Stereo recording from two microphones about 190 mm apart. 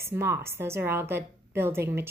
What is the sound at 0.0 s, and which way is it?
A woman's voice, 15° right (ahead or behind).